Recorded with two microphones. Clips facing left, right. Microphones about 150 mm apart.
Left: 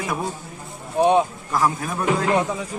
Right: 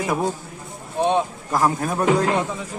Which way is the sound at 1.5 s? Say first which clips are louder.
Right 2 dB; 45° right (ahead or behind).